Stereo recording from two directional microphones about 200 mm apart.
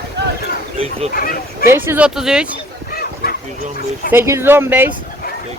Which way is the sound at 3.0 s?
50° left (ahead or behind).